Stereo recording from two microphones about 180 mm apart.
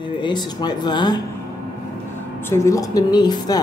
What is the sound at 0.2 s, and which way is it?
Speech, 25° left (ahead or behind).